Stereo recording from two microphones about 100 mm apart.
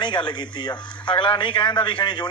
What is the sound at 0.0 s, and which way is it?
A man's voice, 50° left (ahead or behind).